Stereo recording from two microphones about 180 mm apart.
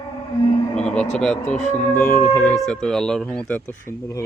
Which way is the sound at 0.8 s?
5° left (ahead or behind).